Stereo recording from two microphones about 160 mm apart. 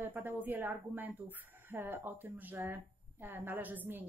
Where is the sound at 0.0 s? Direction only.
10° right (ahead or behind).